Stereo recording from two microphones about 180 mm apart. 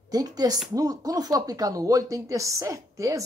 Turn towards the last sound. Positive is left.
turn(degrees=-15)  # may be behind; listen again after turning